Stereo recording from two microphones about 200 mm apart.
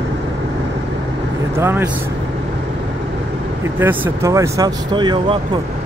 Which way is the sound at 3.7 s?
10° right (ahead or behind).